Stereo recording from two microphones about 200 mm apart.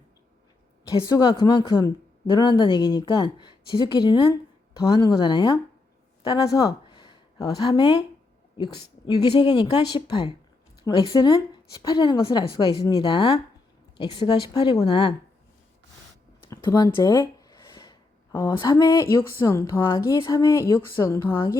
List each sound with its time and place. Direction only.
0.9 s speech: 20° left (ahead or behind)
16.5 s a sound: 15° left (ahead or behind)
19.5 s a woman's voice: 15° left (ahead or behind)